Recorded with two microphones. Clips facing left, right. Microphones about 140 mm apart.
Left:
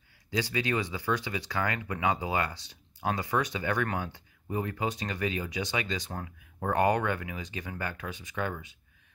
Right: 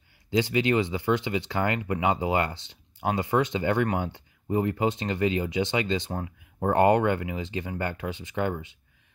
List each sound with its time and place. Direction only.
0.3 s speech: 20° right (ahead or behind)